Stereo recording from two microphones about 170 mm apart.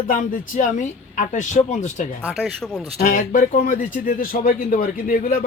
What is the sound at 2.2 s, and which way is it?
Speech, centre (ahead or behind).